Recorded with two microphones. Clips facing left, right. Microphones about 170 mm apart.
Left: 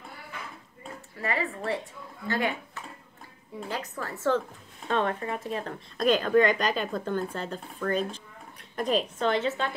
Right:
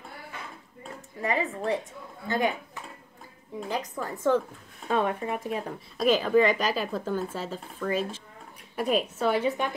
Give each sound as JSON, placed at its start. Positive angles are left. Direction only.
{"t": 1.1, "sound": "a woman's voice", "side_deg": -20}